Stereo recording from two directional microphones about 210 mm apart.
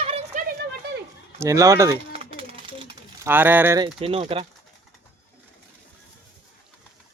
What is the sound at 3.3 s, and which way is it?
Speech, 10° right (ahead or behind).